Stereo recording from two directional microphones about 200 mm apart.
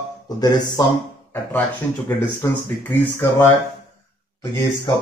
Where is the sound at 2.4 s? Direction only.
15° left (ahead or behind).